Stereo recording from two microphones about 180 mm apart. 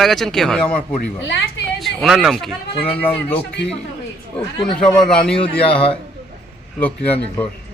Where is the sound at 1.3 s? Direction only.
75° left (ahead or behind).